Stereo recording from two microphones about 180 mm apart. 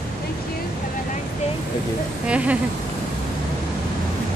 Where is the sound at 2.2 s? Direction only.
5° right (ahead or behind).